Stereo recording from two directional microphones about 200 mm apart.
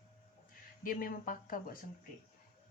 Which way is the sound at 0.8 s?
45° left (ahead or behind).